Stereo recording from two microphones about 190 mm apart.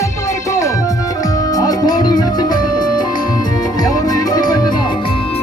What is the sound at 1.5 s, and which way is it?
Music, 20° left (ahead or behind).